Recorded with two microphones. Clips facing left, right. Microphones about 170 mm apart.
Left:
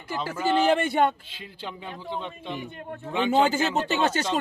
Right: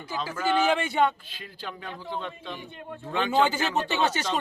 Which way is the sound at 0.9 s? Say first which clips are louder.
Left 2 dB; 55° left (ahead or behind).